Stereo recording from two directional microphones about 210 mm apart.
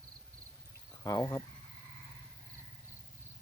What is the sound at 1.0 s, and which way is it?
Speech, 15° left (ahead or behind).